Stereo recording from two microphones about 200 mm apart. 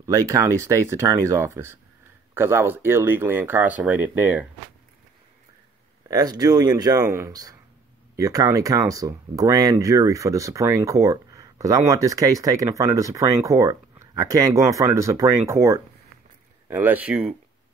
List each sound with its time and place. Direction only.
0.0 s speech: 15° right (ahead or behind)
6.0 s speech: 20° right (ahead or behind)